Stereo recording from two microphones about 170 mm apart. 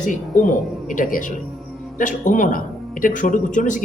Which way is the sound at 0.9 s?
50° left (ahead or behind).